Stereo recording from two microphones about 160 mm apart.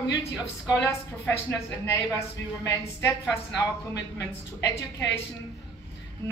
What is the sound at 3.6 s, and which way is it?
Speech, 20° left (ahead or behind).